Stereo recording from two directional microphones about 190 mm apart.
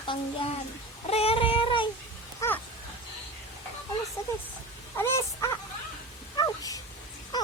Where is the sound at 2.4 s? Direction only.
15° left (ahead or behind).